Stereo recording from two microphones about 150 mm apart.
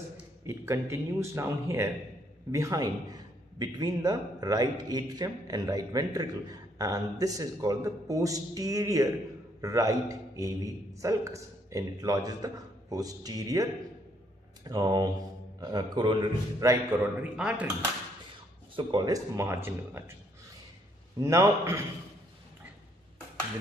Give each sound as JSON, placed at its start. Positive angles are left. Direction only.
{"t": 0.5, "sound": "a man's voice", "side_deg": -20}
{"t": 17.2, "sound": "a man's voice", "side_deg": -10}
{"t": 18.8, "sound": "a man's voice", "side_deg": -30}
{"t": 21.2, "sound": "a man's voice", "side_deg": -20}